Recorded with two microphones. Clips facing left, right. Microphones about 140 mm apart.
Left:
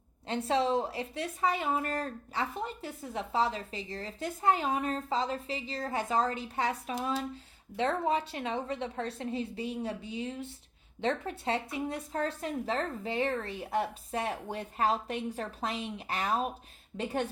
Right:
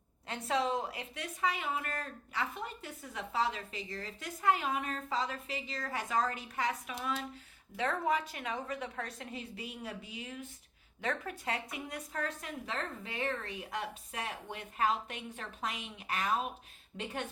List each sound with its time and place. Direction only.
0.3 s a woman's voice: 30° left (ahead or behind)